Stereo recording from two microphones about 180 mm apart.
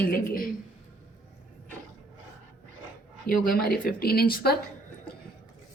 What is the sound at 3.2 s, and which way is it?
Speech, 55° left (ahead or behind).